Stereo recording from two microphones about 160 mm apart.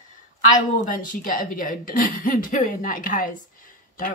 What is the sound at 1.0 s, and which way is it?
Speech, 60° left (ahead or behind).